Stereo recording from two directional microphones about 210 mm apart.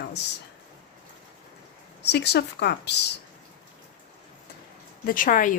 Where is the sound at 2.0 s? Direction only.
50° left (ahead or behind).